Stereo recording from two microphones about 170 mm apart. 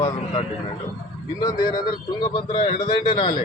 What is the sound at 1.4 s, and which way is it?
Speech, 25° left (ahead or behind).